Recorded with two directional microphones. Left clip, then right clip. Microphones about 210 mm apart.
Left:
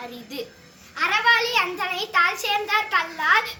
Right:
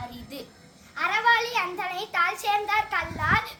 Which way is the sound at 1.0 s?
10° right (ahead or behind).